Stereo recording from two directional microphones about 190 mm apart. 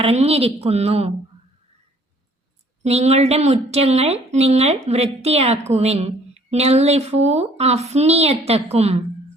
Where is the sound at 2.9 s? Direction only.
35° right (ahead or behind).